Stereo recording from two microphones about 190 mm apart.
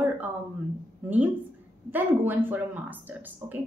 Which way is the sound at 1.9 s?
10° right (ahead or behind).